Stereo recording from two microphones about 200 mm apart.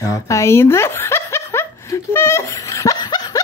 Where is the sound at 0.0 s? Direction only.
15° left (ahead or behind).